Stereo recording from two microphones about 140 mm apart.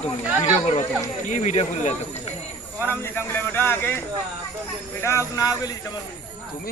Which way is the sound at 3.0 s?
15° left (ahead or behind).